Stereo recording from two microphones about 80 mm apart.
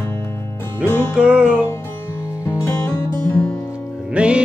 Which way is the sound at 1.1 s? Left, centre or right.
Centre.